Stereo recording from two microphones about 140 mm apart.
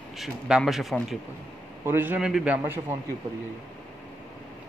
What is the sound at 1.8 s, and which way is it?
Speech, 15° right (ahead or behind).